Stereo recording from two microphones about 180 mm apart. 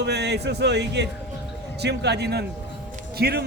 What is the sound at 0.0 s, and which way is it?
A man's voice, 70° right (ahead or behind).